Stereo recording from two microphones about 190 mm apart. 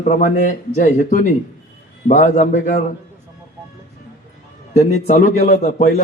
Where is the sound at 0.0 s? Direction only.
40° left (ahead or behind).